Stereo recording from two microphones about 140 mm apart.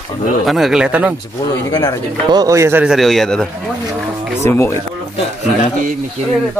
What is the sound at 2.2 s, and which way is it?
Speech, 25° right (ahead or behind).